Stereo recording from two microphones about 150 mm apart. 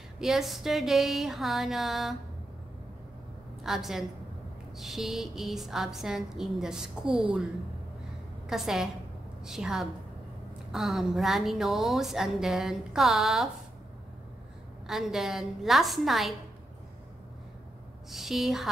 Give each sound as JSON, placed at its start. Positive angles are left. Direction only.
{"t": 0.2, "sound": "a woman's voice", "side_deg": -5}
{"t": 3.6, "sound": "a woman's voice", "side_deg": 0}
{"t": 7.1, "sound": "a woman's voice", "side_deg": -35}
{"t": 8.5, "sound": "a woman's voice", "side_deg": 0}
{"t": 14.9, "sound": "a woman's voice", "side_deg": 0}
{"t": 18.1, "sound": "a woman's voice", "side_deg": 0}